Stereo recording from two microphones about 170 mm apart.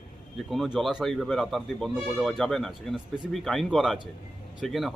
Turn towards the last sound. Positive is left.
turn(degrees=0)  # may be behind; listen again after turning